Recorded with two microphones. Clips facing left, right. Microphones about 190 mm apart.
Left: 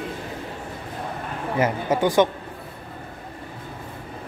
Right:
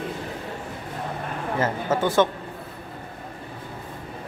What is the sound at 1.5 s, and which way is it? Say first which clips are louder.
Speech: left 2 dB; 15° left (ahead or behind).